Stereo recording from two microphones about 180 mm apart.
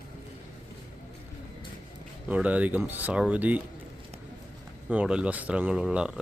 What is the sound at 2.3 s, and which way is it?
Speech, 10° right (ahead or behind).